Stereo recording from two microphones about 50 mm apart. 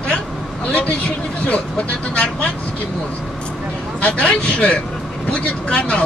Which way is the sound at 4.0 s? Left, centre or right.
Left.